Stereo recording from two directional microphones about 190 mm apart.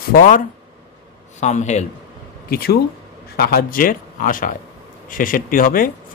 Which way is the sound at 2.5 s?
55° left (ahead or behind).